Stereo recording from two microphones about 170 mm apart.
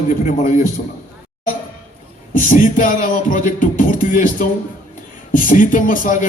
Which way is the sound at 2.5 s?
50° left (ahead or behind).